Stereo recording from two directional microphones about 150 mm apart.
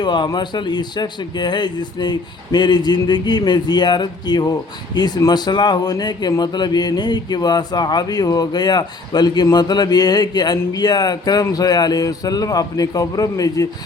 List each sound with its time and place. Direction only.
0.0 s speech: 30° left (ahead or behind)